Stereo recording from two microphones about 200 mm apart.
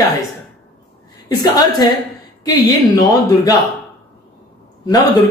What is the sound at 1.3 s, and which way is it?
A woman's voice, 20° left (ahead or behind).